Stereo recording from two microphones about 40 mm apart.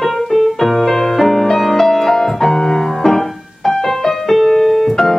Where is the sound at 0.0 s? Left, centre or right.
Centre.